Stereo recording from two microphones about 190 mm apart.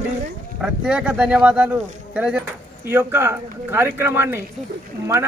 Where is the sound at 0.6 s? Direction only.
5° right (ahead or behind).